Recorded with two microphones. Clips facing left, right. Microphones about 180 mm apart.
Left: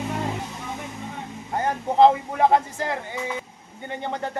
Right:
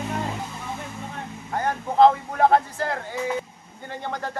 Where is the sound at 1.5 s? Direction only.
20° left (ahead or behind).